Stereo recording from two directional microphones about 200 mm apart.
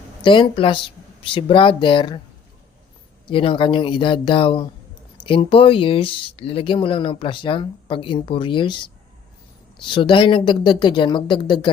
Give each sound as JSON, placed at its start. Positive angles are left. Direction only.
{"t": 0.2, "sound": "speech", "side_deg": 25}
{"t": 3.2, "sound": "speech", "side_deg": 25}